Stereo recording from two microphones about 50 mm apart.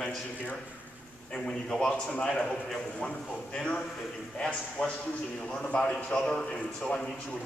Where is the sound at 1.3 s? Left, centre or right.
Centre.